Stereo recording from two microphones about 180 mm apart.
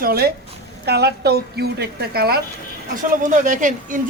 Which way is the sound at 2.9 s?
45° right (ahead or behind).